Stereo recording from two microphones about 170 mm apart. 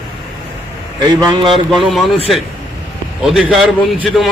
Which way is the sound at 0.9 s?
25° right (ahead or behind).